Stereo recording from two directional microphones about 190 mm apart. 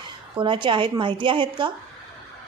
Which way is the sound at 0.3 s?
25° right (ahead or behind).